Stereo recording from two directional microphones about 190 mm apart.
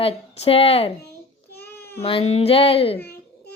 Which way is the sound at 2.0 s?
30° left (ahead or behind).